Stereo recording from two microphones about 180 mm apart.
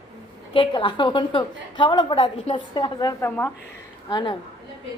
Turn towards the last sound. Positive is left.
turn(degrees=25)  # may be behind; listen again after turning